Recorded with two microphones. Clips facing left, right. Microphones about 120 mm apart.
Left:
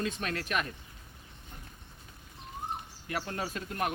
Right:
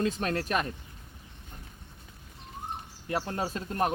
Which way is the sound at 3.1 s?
30° right (ahead or behind).